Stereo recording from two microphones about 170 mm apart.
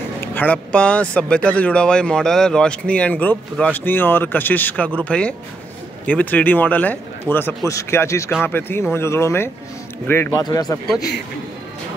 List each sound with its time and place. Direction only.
0.2 s a man's voice: 10° left (ahead or behind)